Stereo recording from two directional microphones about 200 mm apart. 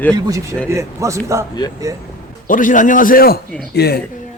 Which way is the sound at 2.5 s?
40° left (ahead or behind).